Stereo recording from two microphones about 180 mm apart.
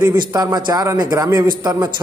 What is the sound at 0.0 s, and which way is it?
A man's voice, 15° right (ahead or behind).